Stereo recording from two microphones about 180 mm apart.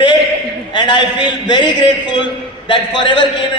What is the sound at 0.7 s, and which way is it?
A man's voice, 25° left (ahead or behind).